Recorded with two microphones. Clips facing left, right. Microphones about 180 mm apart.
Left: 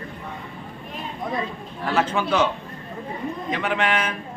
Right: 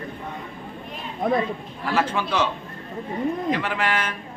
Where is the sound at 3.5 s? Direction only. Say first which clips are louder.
Left 1 dB; 5° right (ahead or behind).